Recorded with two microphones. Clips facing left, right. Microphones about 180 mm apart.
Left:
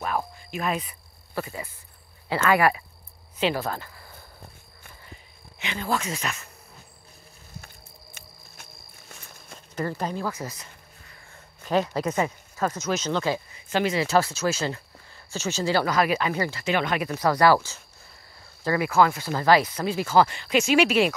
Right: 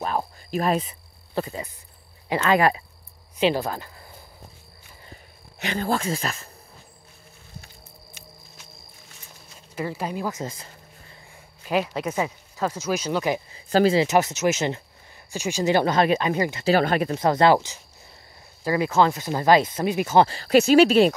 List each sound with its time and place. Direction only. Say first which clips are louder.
0.0 s cricket: right 2 dB; 30° right (ahead or behind)
2.4 s speech: right 1 dB; 25° right (ahead or behind)
5.6 s speech: right 3 dB; 40° right (ahead or behind)
7.6 s walk: even; 55° left (ahead or behind)
9.8 s speech: even; 5° right (ahead or behind); by 11.1 s 25° right (ahead or behind)
11.6 s speech: even; 10° right (ahead or behind)
13.5 s a sound: right 6 dB; 35° right (ahead or behind)
14.0 s speech: right 2 dB; 20° right (ahead or behind)
16.6 s speech: right 6 dB; 35° right (ahead or behind); by 20.2 s 20° right (ahead or behind)
20.2 s speech: right 6 dB; 35° right (ahead or behind)